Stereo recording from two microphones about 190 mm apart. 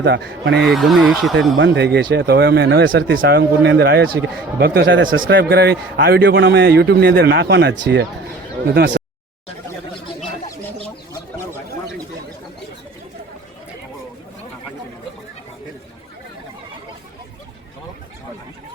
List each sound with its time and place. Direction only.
0.0 s a man's voice: 60° right (ahead or behind)
0.7 s speech: centre (ahead or behind)
1.5 s a man's voice: 70° right (ahead or behind)